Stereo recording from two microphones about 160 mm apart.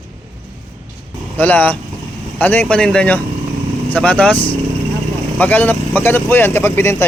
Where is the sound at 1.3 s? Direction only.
10° left (ahead or behind).